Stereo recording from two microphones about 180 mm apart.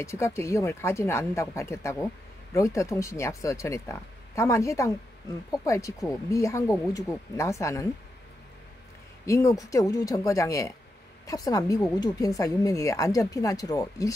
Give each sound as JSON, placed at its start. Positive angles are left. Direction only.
{"t": 0.0, "sound": "speech", "side_deg": 15}
{"t": 9.2, "sound": "a woman's voice", "side_deg": 15}